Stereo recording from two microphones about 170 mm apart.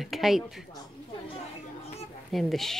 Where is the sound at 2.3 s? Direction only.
Centre (ahead or behind).